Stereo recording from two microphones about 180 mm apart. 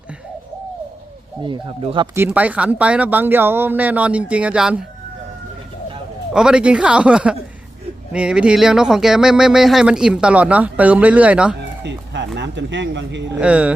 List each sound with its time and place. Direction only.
1.5 s speech: 25° right (ahead or behind)
2.1 s speech: 10° right (ahead or behind)
6.3 s speech: 5° right (ahead or behind)
11.8 s speech: 75° right (ahead or behind)
13.4 s speech: 5° right (ahead or behind)